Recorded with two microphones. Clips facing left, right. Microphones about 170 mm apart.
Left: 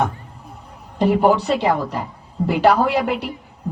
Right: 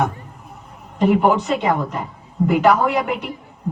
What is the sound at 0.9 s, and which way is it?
A man's voice, 35° left (ahead or behind).